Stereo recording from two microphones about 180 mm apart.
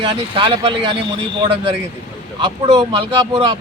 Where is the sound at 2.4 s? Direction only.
25° right (ahead or behind).